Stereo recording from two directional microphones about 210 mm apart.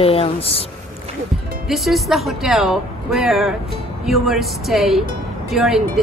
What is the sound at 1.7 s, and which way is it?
A woman's voice, centre (ahead or behind).